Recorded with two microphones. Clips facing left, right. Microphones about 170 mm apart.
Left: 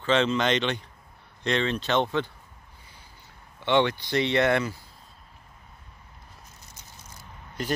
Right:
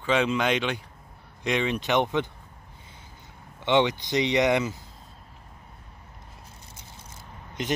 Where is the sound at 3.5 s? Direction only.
15° right (ahead or behind).